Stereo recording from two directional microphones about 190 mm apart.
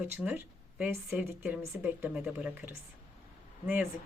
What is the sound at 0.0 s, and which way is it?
A woman's voice, 10° right (ahead or behind).